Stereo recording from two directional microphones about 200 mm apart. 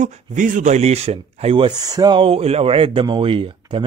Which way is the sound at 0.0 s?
40° right (ahead or behind).